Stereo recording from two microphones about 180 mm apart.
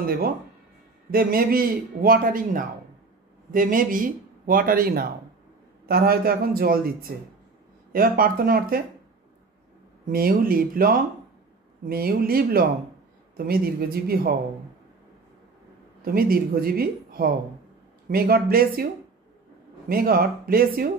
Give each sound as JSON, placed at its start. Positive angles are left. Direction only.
{"t": 0.0, "sound": "a woman's voice", "side_deg": -55}
{"t": 10.0, "sound": "a woman's voice", "side_deg": -55}
{"t": 16.0, "sound": "a woman's voice", "side_deg": -55}
{"t": 19.9, "sound": "a woman's voice", "side_deg": -55}